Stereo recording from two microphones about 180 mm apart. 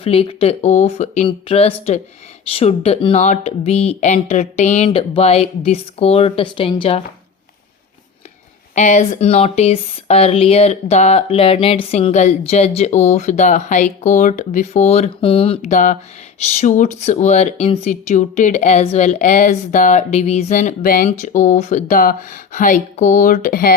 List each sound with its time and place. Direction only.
0.0 s speech: 30° left (ahead or behind)
8.7 s speech: 40° left (ahead or behind)
15.7 s speech: 45° left (ahead or behind)